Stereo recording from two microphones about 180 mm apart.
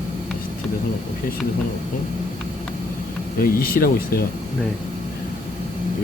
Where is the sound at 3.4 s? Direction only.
55° left (ahead or behind).